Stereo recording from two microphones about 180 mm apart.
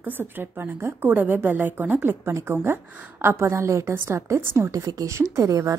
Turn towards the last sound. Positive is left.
turn(degrees=-20)  # may be behind; listen again after turning